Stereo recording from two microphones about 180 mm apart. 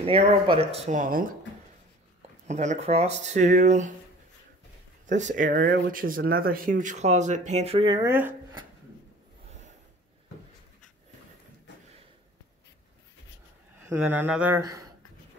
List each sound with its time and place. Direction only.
0.0 s speech: 30° right (ahead or behind); by 1.3 s 50° right (ahead or behind)
2.4 s speech: 40° right (ahead or behind)
5.0 s speech: 45° right (ahead or behind); by 8.1 s 25° right (ahead or behind)
8.1 s speech: 10° right (ahead or behind)
13.8 s speech: 10° right (ahead or behind)